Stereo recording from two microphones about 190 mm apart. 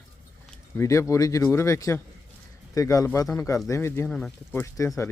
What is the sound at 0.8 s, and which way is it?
Speech, 15° left (ahead or behind).